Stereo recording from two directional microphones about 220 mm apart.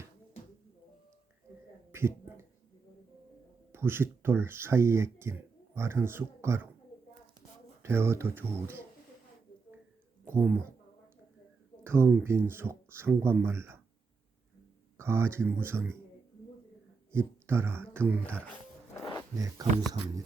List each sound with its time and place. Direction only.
1.9 s a sound: 10° right (ahead or behind)
3.7 s speech: 10° right (ahead or behind)
7.8 s speech: 10° right (ahead or behind)
10.2 s speech: 10° right (ahead or behind)
11.8 s speech: 10° right (ahead or behind)
14.9 s speech: 10° right (ahead or behind)
17.1 s speech: 10° right (ahead or behind)
18.9 s music: 15° left (ahead or behind)
19.6 s speech: 15° right (ahead or behind)